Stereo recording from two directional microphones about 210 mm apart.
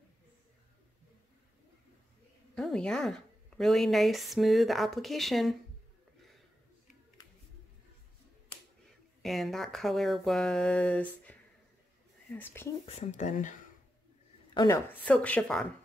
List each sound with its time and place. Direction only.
2.5 s speech: 5° left (ahead or behind)
9.2 s speech: centre (ahead or behind)
12.8 s speech: 35° left (ahead or behind)
14.5 s speech: 20° left (ahead or behind)
14.9 s speech: 5° left (ahead or behind)